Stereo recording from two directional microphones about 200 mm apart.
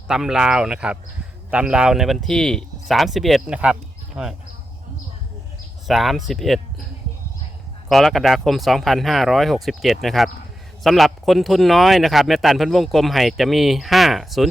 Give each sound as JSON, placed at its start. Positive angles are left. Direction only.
{"t": 0.1, "sound": "speech", "side_deg": -5}
{"t": 5.9, "sound": "speech", "side_deg": 0}
{"t": 7.9, "sound": "speech", "side_deg": 0}